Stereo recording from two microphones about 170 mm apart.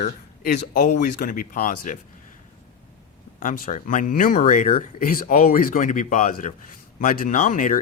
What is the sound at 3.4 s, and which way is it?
Speech, 50° left (ahead or behind).